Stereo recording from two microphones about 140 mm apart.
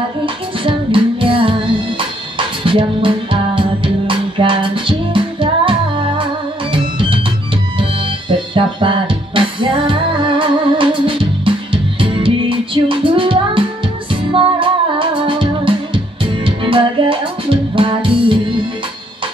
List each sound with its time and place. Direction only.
0.2 s music: 40° right (ahead or behind)